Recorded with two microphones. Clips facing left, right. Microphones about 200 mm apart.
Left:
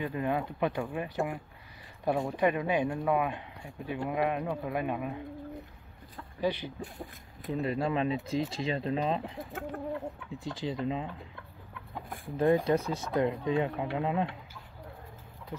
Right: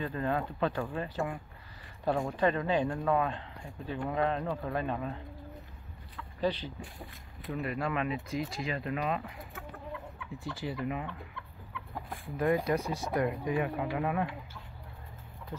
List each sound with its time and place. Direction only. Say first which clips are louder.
0.0 s speech: left 1 dB; 15° left (ahead or behind)
6.4 s speech: left 1 dB; 10° left (ahead or behind)
7.4 s speech: left 4 dB; 25° left (ahead or behind)
9.5 s chicken: left 8 dB; 70° left (ahead or behind)
10.3 s speech: left 1 dB; 20° left (ahead or behind)
12.4 s speech: left 3 dB; 30° left (ahead or behind)